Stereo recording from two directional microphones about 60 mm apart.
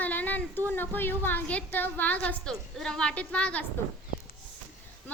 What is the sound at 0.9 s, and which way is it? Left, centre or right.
A woman's voice, left.